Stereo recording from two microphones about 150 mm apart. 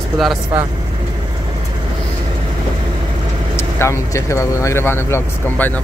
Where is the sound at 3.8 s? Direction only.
20° left (ahead or behind).